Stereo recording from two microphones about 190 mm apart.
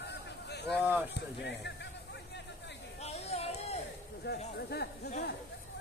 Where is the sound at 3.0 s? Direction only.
35° left (ahead or behind).